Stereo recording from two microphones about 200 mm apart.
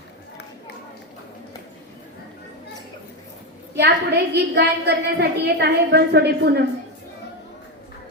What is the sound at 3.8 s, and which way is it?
A woman's voice, 55° right (ahead or behind).